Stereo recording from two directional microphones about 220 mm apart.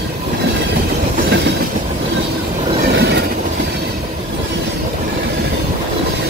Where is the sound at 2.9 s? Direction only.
50° right (ahead or behind).